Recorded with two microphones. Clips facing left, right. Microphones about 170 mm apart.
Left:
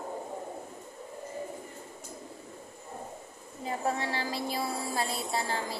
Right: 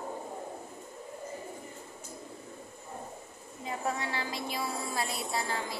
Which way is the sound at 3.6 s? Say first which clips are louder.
Left 3 dB; 35° left (ahead or behind).